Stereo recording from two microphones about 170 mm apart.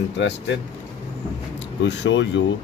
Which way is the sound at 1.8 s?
90° left.